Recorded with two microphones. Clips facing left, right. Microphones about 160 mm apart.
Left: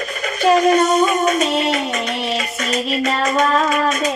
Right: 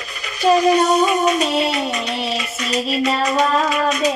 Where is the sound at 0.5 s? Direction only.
50° left (ahead or behind).